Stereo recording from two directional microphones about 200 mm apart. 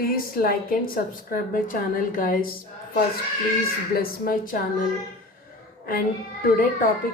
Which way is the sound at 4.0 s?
45° left (ahead or behind).